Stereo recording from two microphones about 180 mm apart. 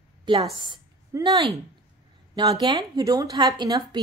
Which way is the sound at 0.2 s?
25° right (ahead or behind).